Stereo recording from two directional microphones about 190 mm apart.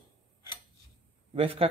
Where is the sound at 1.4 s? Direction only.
30° right (ahead or behind).